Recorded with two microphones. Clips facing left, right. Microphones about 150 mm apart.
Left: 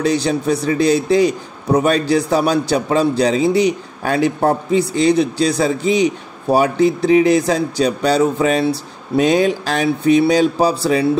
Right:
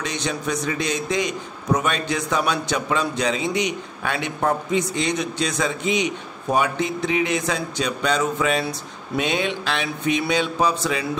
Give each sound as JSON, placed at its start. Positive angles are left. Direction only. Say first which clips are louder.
{"t": 0.0, "sound": "a man's voice", "louder": "left 10 dB", "side_deg": 35}